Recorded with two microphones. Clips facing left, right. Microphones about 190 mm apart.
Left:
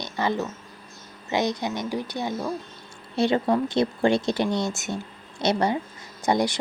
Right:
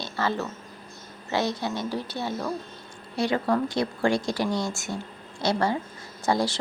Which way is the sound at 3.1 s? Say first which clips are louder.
Left 3 dB; 25° left (ahead or behind).